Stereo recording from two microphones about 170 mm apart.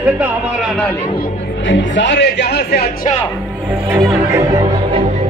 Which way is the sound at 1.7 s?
90° left.